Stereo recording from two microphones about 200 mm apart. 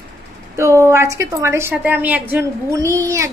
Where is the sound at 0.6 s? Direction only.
15° right (ahead or behind).